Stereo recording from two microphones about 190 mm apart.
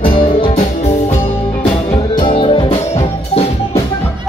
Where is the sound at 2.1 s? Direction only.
25° left (ahead or behind).